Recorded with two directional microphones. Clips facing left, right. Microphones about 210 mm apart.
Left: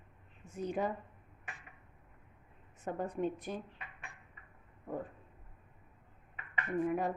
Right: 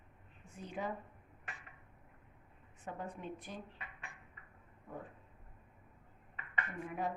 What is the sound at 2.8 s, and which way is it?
Speech, 45° left (ahead or behind).